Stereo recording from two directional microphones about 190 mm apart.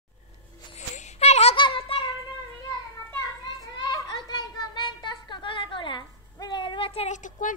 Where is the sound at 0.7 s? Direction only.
35° left (ahead or behind).